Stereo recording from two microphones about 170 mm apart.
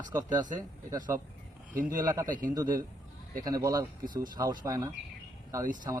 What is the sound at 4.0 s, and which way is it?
Speech, 55° right (ahead or behind).